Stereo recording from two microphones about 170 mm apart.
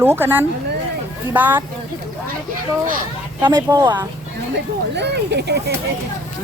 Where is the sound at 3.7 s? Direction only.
25° right (ahead or behind).